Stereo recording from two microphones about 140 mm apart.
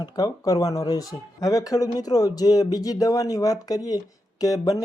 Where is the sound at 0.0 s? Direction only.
25° left (ahead or behind).